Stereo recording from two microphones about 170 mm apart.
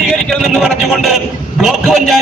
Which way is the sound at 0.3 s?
Centre (ahead or behind).